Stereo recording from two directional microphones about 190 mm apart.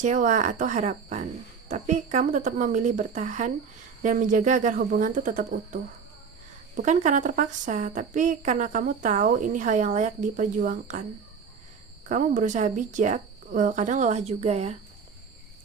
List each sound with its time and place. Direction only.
0.0 s a woman's voice: 40° right (ahead or behind)
12.0 s a woman's voice: 40° right (ahead or behind)